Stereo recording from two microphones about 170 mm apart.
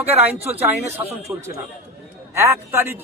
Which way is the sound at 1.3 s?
15° right (ahead or behind).